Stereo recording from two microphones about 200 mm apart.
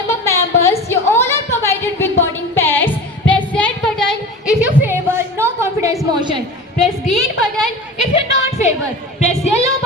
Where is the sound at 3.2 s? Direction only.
5° left (ahead or behind); by 5.9 s 15° right (ahead or behind).